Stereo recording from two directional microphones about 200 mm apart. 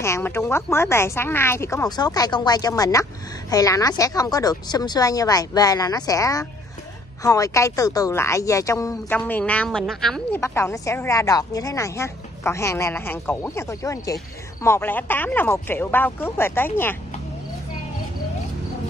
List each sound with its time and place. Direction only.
0.0 s speech: 10° left (ahead or behind)